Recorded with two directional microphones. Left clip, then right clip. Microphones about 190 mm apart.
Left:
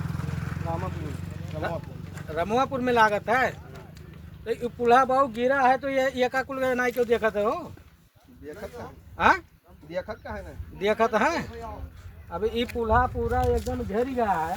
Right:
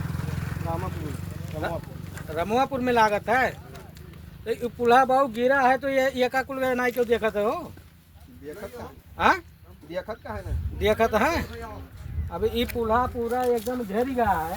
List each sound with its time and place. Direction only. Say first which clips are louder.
0.0 s vehicle: right 1 dB; 45° right (ahead or behind)
0.9 s speech: right 1 dB; 35° right (ahead or behind)
2.3 s speech: right 1 dB; 10° right (ahead or behind)
9.1 s speech: even; 5° right (ahead or behind)
9.9 s speech: even; 5° left (ahead or behind)
10.8 s speech: right 1 dB; 10° right (ahead or behind)
14.2 s speech: right 2 dB; 35° left (ahead or behind)